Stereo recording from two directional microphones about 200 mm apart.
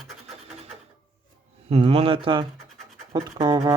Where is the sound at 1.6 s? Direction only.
30° right (ahead or behind).